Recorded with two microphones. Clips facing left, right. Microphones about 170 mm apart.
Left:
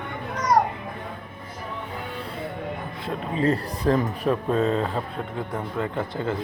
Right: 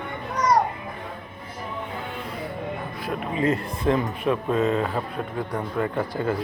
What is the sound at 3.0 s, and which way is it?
Speech, 35° left (ahead or behind).